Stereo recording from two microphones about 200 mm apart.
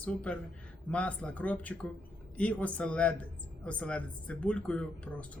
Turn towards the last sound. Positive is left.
turn(degrees=5)  # may be behind; listen again after turning